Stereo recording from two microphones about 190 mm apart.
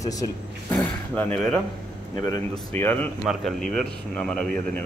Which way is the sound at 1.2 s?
5° left (ahead or behind).